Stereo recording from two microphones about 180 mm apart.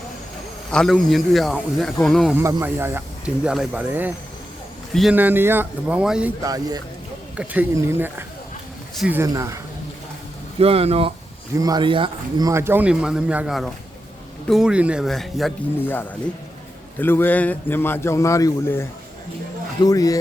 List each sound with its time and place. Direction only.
0.7 s speech: centre (ahead or behind)
2.4 s speech: 15° right (ahead or behind)
6.4 s speech: 20° right (ahead or behind)
7.3 s speech: 10° right (ahead or behind)
10.6 s speech: 35° right (ahead or behind)
11.5 s speech: 20° right (ahead or behind); by 16.0 s centre (ahead or behind)
17.0 s a man's voice: 10° left (ahead or behind)